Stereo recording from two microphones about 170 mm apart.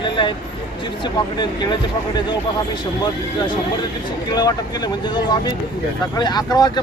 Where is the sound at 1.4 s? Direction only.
25° left (ahead or behind).